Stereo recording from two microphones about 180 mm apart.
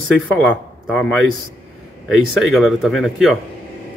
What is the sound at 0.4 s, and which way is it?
Speech, 5° left (ahead or behind).